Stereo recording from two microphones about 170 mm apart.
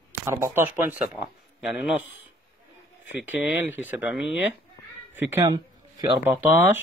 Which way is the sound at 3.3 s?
10° right (ahead or behind).